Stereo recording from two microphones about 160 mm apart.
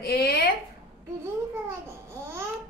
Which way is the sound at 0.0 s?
70° left (ahead or behind).